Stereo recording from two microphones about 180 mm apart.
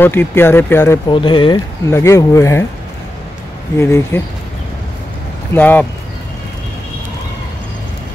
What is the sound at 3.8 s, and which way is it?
Speech, 15° left (ahead or behind).